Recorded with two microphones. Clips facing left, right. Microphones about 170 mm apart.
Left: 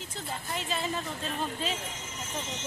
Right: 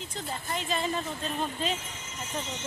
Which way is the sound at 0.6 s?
5° left (ahead or behind).